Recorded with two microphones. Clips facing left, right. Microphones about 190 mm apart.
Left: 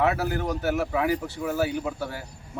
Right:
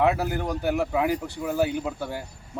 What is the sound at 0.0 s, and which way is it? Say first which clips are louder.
Speech: right 1 dB; 15° right (ahead or behind).